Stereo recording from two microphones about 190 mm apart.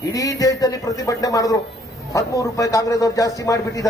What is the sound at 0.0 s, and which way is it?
A man's voice, 20° left (ahead or behind).